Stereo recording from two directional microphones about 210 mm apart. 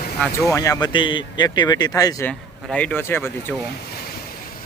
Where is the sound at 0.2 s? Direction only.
15° left (ahead or behind).